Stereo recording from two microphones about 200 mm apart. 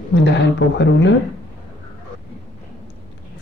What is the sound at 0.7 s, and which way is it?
Speech, 60° left (ahead or behind).